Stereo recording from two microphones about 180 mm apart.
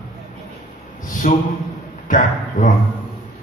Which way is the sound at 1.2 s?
40° left (ahead or behind).